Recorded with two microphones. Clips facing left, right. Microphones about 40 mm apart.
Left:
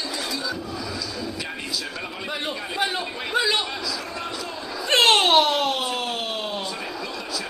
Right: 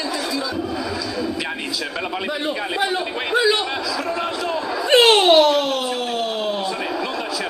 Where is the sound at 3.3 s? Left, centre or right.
Centre.